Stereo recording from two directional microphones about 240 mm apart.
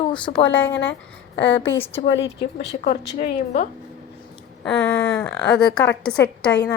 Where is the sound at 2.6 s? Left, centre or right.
Left.